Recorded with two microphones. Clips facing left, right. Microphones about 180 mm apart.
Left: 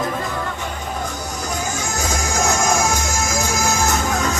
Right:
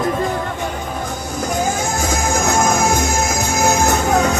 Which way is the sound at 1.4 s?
50° right (ahead or behind).